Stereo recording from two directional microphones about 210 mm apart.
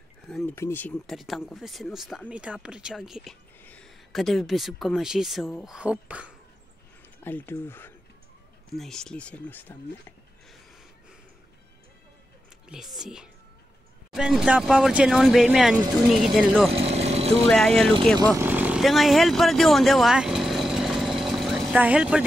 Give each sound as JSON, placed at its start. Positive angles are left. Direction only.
{"t": 0.3, "sound": "a sound", "side_deg": 0}
{"t": 0.6, "sound": "speech", "side_deg": 10}
{"t": 7.2, "sound": "speech", "side_deg": 10}
{"t": 12.6, "sound": "speech", "side_deg": 0}
{"t": 16.7, "sound": "vehicle", "side_deg": -30}
{"t": 17.5, "sound": "speech", "side_deg": 0}
{"t": 18.3, "sound": "vehicle", "side_deg": -10}